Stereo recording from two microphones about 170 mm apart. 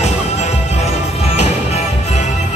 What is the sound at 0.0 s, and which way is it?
Music, 40° left (ahead or behind).